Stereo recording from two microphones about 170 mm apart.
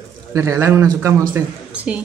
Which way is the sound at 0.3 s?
20° right (ahead or behind).